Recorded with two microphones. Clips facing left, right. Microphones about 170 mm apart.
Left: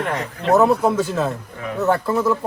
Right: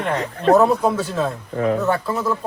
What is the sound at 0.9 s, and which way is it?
Speech, 15° left (ahead or behind).